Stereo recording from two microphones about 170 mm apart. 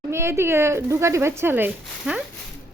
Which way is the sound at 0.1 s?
15° right (ahead or behind).